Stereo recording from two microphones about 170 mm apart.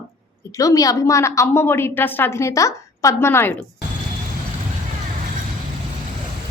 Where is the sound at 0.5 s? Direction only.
20° left (ahead or behind).